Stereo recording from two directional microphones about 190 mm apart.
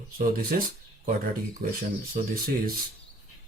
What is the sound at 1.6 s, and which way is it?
Speech, 55° right (ahead or behind).